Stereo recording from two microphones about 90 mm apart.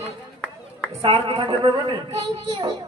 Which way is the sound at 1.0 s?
80° right.